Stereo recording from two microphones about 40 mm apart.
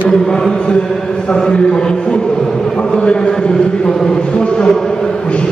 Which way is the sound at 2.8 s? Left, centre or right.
Left.